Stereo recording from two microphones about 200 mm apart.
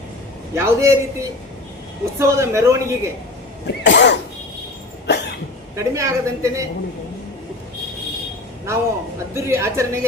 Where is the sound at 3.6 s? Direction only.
60° left (ahead or behind).